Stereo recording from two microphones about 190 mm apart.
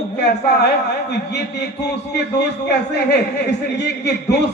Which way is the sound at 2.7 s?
65° left (ahead or behind).